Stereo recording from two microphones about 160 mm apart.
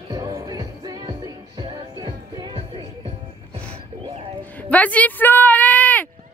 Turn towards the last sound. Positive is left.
turn(degrees=10)  # may be behind; listen again after turning